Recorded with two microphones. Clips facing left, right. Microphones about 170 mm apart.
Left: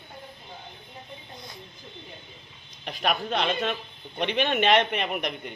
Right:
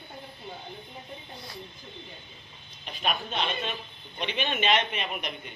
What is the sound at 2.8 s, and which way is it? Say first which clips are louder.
A man's voice: left 4 dB; 70° left (ahead or behind).